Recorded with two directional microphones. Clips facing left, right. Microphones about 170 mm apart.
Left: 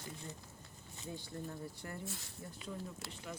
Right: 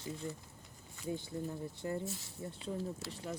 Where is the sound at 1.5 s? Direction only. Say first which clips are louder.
Right 7 dB; 20° right (ahead or behind).